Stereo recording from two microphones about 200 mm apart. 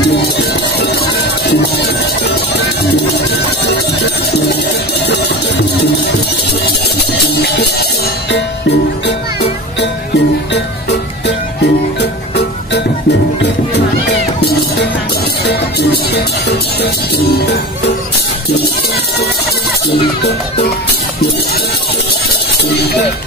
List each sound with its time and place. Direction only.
0.1 s music: 55° left (ahead or behind)
6.6 s music: 55° left (ahead or behind)
15.4 s music: 55° left (ahead or behind)